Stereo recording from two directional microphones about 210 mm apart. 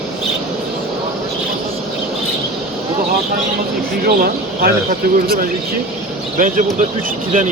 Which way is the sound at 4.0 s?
50° right (ahead or behind).